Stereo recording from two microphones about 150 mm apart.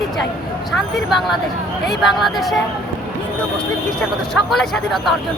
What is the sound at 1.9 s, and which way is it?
Speech, centre (ahead or behind).